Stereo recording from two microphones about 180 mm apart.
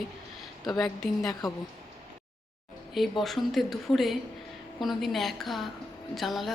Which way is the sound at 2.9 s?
Centre (ahead or behind).